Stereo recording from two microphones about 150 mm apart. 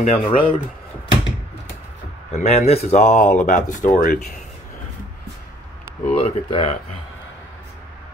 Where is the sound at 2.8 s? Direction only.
55° left (ahead or behind).